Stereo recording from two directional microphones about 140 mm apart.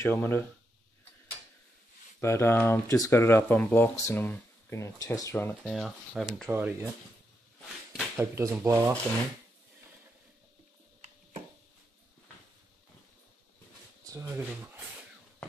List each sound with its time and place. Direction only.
0.0 s speech: 15° left (ahead or behind)
2.1 s speech: 15° left (ahead or behind)
5.6 s speech: centre (ahead or behind)
6.4 s speech: 15° right (ahead or behind)
8.2 s speech: 20° right (ahead or behind)
14.0 s speech: 20° right (ahead or behind)